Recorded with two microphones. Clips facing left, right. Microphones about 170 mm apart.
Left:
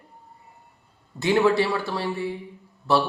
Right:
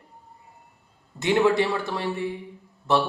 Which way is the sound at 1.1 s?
20° right (ahead or behind).